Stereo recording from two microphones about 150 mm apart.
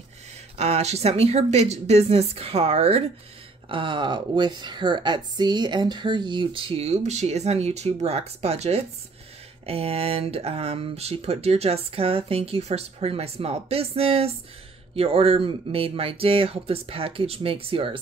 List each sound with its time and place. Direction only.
0.6 s a woman's voice: 45° right (ahead or behind)